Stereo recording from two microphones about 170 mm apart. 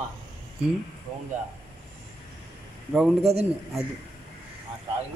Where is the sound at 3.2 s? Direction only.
35° right (ahead or behind).